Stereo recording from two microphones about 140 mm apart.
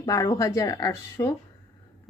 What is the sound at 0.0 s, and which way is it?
A woman's voice, 25° left (ahead or behind).